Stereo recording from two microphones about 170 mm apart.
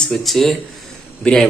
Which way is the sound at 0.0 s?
Centre (ahead or behind).